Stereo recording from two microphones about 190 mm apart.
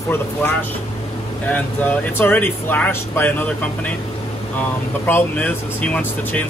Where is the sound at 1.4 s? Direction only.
10° left (ahead or behind).